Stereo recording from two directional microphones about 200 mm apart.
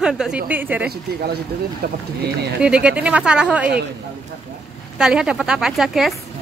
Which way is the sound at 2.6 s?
5° right (ahead or behind).